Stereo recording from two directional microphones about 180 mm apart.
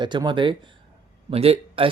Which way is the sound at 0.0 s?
25° right (ahead or behind).